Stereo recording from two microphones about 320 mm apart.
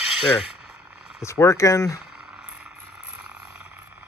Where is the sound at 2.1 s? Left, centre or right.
Centre.